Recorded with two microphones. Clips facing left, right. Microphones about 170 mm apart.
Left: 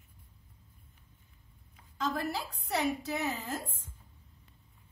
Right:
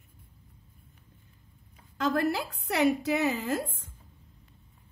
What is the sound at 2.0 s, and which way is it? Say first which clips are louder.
A woman's voice: right 7 dB; 75° right (ahead or behind).